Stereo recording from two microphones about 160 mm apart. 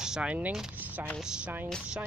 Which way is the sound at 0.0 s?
5° right (ahead or behind).